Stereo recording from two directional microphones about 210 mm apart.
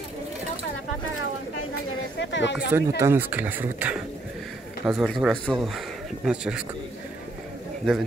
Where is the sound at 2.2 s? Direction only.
60° left (ahead or behind).